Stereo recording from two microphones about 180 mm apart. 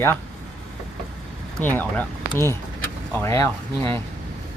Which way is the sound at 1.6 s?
10° left (ahead or behind).